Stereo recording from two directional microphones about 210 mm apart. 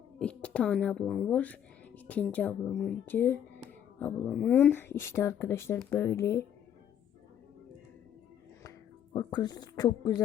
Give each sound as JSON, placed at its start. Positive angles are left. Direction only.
{"t": 0.2, "sound": "speech", "side_deg": 5}
{"t": 9.1, "sound": "speech", "side_deg": 20}